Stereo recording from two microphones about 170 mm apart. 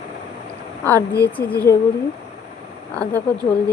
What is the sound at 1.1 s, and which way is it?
Speech, 70° left (ahead or behind).